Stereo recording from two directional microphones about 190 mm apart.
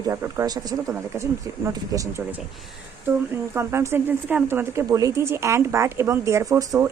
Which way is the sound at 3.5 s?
15° right (ahead or behind).